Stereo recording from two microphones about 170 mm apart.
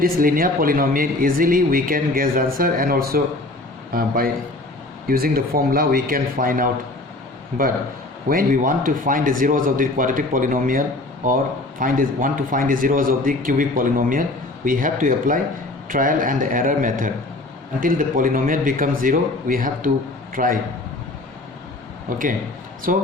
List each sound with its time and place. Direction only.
0.0 s speech: 55° right (ahead or behind)
8.3 s a man's voice: 55° right (ahead or behind)
22.9 s a man's voice: 55° right (ahead or behind)